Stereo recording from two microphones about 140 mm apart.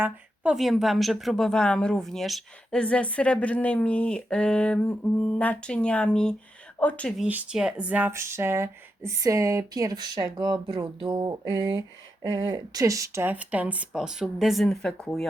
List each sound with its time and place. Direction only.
0.0 s speech: 5° right (ahead or behind)
7.2 s speech: 10° right (ahead or behind)